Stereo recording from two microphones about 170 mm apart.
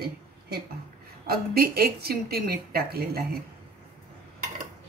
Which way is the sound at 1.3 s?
65° right (ahead or behind).